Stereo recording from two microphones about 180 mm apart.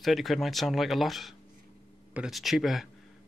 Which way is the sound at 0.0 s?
Centre (ahead or behind).